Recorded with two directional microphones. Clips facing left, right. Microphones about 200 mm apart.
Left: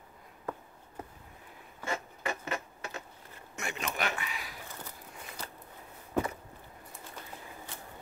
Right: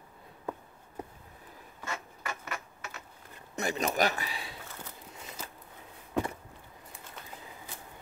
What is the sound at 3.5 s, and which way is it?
A man's voice, 35° right (ahead or behind).